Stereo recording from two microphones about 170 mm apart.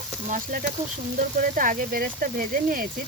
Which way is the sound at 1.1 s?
50° right (ahead or behind).